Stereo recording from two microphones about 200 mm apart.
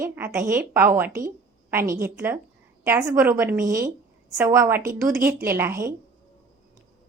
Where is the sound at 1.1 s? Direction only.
45° right (ahead or behind).